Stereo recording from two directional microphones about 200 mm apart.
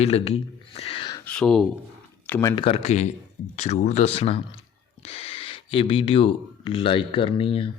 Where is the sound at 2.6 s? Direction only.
30° left (ahead or behind).